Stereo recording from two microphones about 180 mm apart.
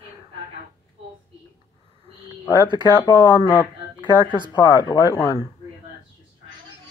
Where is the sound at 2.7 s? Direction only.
25° left (ahead or behind).